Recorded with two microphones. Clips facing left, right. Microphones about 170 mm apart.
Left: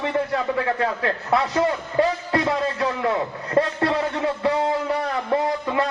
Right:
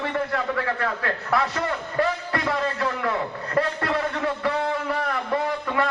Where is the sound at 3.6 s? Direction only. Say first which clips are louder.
Left 3 dB; 25° left (ahead or behind).